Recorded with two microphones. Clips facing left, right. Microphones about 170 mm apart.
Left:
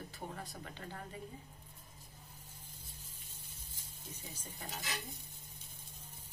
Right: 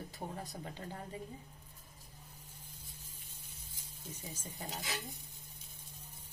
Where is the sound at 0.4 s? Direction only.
35° right (ahead or behind).